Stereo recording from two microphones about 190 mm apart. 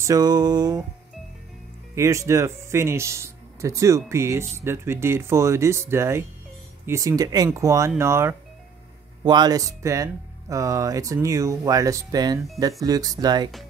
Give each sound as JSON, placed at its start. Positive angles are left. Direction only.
{"t": 0.0, "sound": "music", "side_deg": -20}
{"t": 2.0, "sound": "speech", "side_deg": -15}
{"t": 9.2, "sound": "music", "side_deg": -20}
{"t": 10.5, "sound": "speech", "side_deg": -15}
{"t": 12.8, "sound": "music", "side_deg": -20}